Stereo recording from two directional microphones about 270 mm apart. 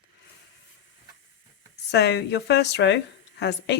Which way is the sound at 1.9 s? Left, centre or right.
Left.